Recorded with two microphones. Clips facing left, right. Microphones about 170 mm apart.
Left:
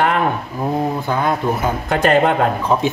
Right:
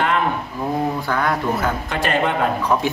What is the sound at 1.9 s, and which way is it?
Speech, 50° left (ahead or behind).